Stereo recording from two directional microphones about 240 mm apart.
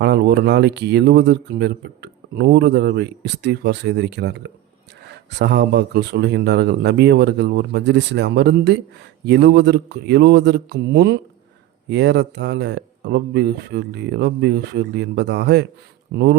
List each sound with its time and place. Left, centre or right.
0.0 s speech: right